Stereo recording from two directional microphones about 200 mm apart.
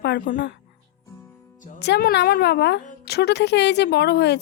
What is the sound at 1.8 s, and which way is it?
Speech, 55° left (ahead or behind).